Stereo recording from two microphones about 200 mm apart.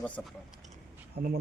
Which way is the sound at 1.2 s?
50° right (ahead or behind).